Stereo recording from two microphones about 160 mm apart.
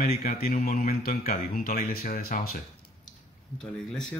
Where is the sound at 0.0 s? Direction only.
60° left (ahead or behind).